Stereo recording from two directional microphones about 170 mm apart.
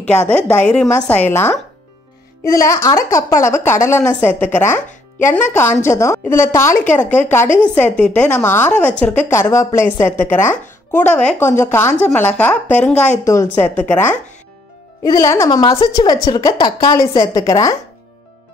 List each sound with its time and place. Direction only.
0.3 s a woman's voice: 10° left (ahead or behind)
15.0 s a woman's voice: 20° left (ahead or behind)